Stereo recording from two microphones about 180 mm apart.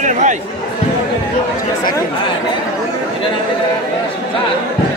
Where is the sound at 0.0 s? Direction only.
45° right (ahead or behind).